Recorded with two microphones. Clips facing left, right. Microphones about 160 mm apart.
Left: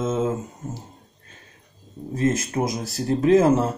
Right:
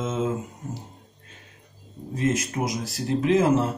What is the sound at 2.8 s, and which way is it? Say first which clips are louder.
Speech: left 3 dB; 40° left (ahead or behind).